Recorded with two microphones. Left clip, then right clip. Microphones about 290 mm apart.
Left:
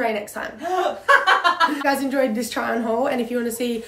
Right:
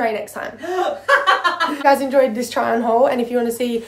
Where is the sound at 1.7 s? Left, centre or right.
Centre.